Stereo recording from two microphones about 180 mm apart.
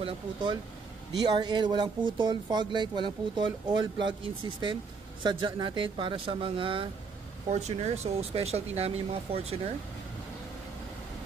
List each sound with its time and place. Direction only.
0.0 s speech: 25° right (ahead or behind)